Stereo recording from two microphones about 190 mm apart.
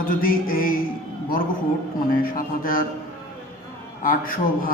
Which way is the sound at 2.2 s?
50° left (ahead or behind).